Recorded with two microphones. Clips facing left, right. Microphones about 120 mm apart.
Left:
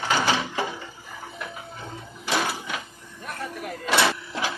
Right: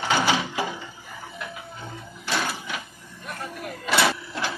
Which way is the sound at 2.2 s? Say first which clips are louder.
Left 2 dB; centre (ahead or behind).